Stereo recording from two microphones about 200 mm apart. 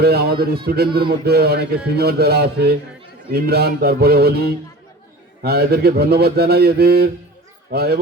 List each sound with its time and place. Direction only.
0.0 s speech: 50° right (ahead or behind)